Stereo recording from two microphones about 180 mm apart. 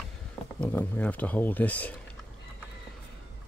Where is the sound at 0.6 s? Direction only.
10° left (ahead or behind).